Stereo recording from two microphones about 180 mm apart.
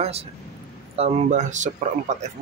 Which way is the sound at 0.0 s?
35° right (ahead or behind).